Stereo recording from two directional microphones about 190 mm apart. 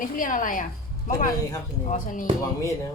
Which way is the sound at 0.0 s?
45° left (ahead or behind).